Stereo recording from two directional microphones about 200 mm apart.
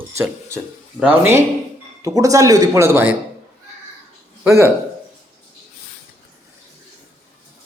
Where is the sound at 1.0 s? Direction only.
10° right (ahead or behind).